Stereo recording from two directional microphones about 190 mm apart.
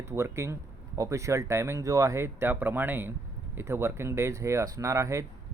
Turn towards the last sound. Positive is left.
turn(degrees=-15)  # may be behind; listen again after turning